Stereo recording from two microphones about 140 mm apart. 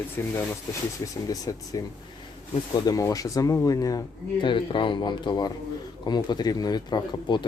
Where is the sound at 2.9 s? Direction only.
25° left (ahead or behind).